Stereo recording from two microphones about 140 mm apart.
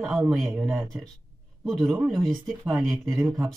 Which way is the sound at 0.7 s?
15° right (ahead or behind).